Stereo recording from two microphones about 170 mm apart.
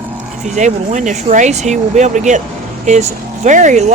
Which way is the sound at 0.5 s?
45° right (ahead or behind).